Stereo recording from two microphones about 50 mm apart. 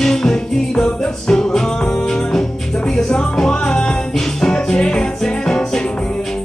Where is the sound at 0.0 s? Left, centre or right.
Centre.